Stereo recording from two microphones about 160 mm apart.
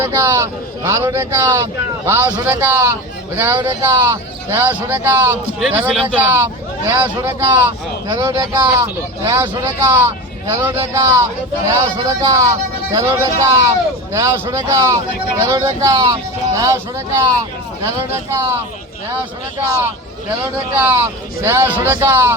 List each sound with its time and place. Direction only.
0.0 s speech: 20° right (ahead or behind)
20.4 s speech: 15° right (ahead or behind)